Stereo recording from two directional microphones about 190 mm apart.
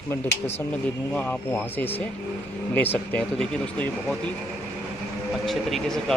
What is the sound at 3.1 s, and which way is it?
Speech, 5° left (ahead or behind).